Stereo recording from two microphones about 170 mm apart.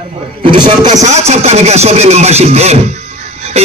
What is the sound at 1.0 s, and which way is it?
Speech, 40° right (ahead or behind).